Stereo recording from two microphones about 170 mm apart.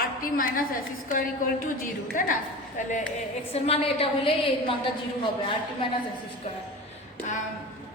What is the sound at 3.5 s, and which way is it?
A woman's voice, 35° left (ahead or behind).